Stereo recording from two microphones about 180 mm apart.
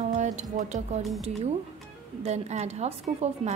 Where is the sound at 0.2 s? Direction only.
40° right (ahead or behind).